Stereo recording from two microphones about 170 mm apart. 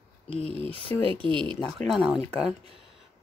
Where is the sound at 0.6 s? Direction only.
35° right (ahead or behind).